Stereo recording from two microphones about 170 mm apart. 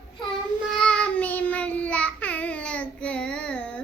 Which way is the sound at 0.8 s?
5° left (ahead or behind).